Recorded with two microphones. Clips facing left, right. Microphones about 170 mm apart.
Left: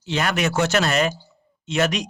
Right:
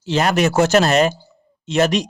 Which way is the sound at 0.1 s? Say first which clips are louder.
Right 6 dB; 40° right (ahead or behind).